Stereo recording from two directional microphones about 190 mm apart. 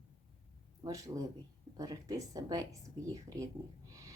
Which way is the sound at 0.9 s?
15° right (ahead or behind).